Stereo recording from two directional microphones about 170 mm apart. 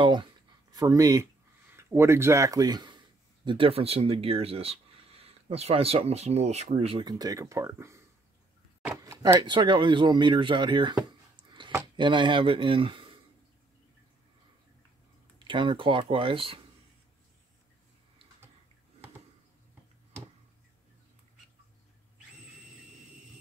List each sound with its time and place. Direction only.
0.0 s speech: 30° right (ahead or behind)
9.4 s speech: 30° right (ahead or behind)
11.3 s a sound: 30° right (ahead or behind)
12.0 s speech: 30° right (ahead or behind)
15.3 s speech: 30° right (ahead or behind)